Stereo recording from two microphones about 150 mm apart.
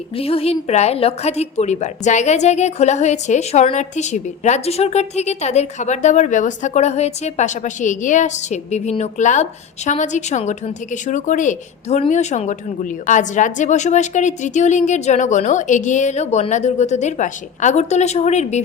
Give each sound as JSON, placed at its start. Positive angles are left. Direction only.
{"t": 0.2, "sound": "a woman's voice", "side_deg": 40}